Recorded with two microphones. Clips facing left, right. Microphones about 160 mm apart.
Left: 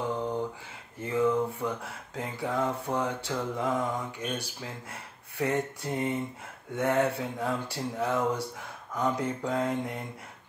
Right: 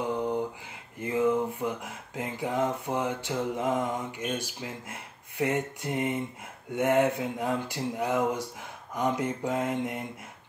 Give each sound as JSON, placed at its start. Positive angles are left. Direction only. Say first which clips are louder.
{"t": 1.0, "sound": "speech", "louder": "right 1 dB", "side_deg": -15}
{"t": 5.4, "sound": "speech", "louder": "right 1 dB", "side_deg": -15}